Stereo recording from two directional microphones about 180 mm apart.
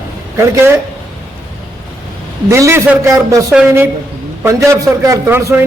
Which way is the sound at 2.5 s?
15° right (ahead or behind).